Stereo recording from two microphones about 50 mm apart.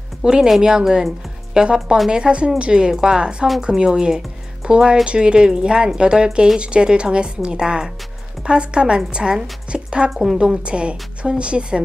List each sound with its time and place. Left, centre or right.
0.2 s a woman's voice: centre